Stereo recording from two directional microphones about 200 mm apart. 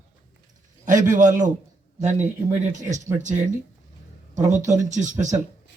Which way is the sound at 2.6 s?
40° right (ahead or behind).